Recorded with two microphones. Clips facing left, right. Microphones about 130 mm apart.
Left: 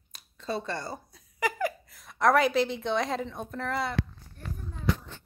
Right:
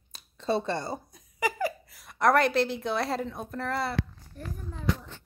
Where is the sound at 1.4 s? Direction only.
5° right (ahead or behind).